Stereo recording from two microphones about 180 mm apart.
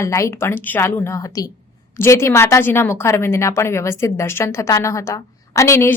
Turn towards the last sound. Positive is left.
turn(degrees=15)  # may be behind; listen again after turning